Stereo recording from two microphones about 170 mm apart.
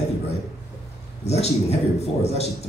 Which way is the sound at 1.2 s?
40° left (ahead or behind).